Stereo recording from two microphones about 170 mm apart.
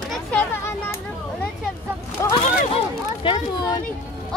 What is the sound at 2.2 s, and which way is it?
Speech, 15° left (ahead or behind).